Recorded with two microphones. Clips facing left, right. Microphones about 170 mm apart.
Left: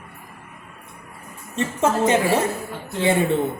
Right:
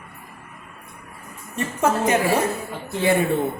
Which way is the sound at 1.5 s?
25° left (ahead or behind).